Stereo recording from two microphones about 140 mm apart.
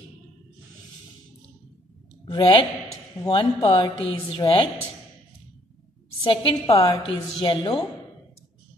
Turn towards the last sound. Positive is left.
turn(degrees=35)  # may be behind; listen again after turning